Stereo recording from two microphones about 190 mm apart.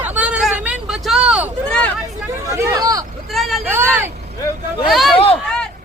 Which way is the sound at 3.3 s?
Centre (ahead or behind).